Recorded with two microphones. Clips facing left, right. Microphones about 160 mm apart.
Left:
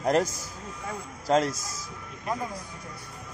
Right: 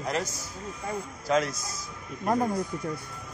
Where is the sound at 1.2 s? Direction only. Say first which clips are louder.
Left 2 dB; 35° left (ahead or behind).